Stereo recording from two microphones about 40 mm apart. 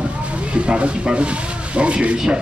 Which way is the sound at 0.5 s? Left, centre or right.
Right.